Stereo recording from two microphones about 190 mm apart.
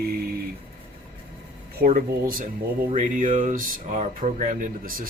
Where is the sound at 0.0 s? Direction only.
55° right (ahead or behind).